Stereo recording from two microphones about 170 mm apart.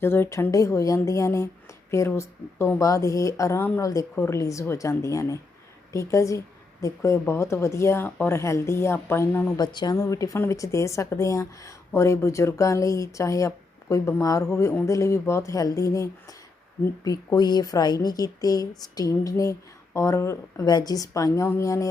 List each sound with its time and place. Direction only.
0.0 s a woman's voice: 15° left (ahead or behind)
9.6 s a woman's voice: 25° left (ahead or behind)